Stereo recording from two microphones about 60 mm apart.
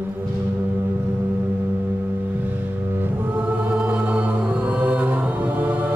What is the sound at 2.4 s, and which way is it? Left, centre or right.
Music, right.